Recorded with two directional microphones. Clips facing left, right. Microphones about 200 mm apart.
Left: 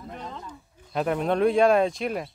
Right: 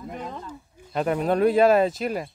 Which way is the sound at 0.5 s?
Centre (ahead or behind).